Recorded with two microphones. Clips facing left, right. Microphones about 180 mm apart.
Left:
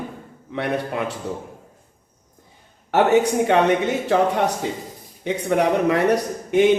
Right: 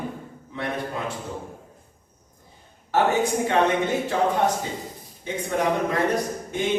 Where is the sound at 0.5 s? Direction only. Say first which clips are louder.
Left 5 dB; 70° left (ahead or behind).